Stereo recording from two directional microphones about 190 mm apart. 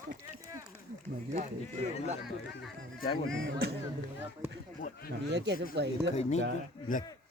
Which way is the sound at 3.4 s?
55° right (ahead or behind).